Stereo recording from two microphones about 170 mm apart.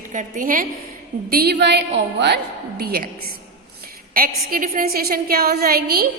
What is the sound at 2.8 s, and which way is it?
A woman's voice, 60° right (ahead or behind).